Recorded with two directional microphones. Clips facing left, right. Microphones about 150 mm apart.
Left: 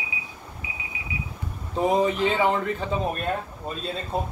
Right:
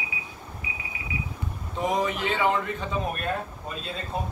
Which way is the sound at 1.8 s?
30° left (ahead or behind).